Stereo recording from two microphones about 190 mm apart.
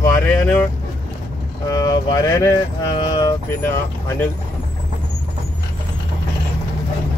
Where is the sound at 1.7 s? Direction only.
20° left (ahead or behind).